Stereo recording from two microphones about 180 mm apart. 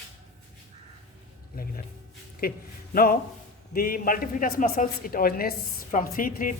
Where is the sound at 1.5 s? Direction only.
55° left (ahead or behind).